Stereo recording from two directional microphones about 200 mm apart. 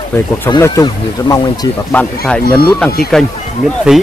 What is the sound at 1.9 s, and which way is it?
Speech, 10° left (ahead or behind).